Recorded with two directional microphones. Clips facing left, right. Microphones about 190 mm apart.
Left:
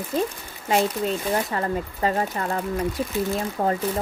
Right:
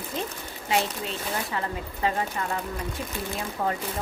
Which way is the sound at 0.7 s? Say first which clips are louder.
Left 6 dB; 45° left (ahead or behind).